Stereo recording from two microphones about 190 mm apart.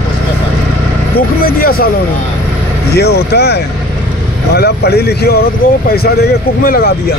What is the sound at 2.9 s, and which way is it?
Speech, 60° left (ahead or behind).